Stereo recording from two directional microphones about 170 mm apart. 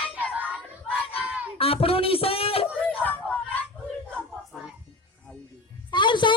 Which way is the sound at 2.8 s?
10° left (ahead or behind).